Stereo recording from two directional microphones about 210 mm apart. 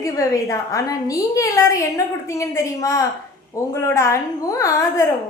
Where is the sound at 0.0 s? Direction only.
15° left (ahead or behind).